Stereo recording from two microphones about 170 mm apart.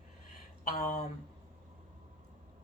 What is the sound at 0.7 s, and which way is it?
Speech, 45° left (ahead or behind).